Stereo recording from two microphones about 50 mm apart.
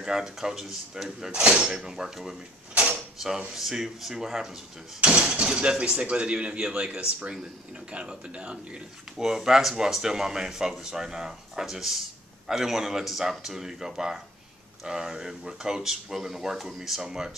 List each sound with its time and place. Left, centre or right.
0.0 s speech: centre
1.3 s speech: centre
9.2 s speech: centre